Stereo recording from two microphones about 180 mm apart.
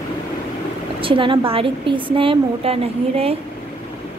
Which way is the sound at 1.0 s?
30° right (ahead or behind).